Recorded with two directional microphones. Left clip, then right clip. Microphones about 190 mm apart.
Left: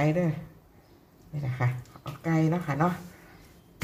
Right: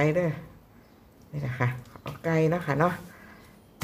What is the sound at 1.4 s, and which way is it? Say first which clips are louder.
Speech: right 3 dB; 25° right (ahead or behind).